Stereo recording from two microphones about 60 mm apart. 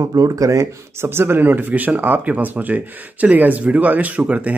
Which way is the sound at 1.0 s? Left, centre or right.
Right.